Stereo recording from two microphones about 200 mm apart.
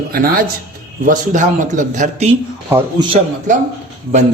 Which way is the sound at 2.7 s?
10° right (ahead or behind).